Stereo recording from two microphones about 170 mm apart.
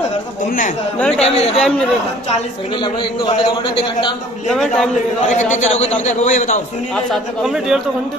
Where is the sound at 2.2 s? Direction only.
35° left (ahead or behind).